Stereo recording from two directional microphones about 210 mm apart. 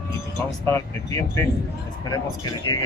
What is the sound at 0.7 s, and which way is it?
Speech, 15° left (ahead or behind).